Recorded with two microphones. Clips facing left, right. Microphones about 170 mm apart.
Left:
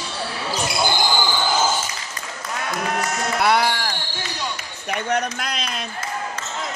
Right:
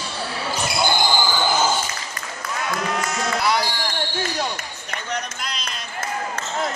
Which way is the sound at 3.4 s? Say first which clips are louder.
Left 5 dB; 60° left (ahead or behind).